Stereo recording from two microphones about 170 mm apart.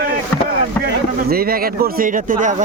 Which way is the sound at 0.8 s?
65° right (ahead or behind).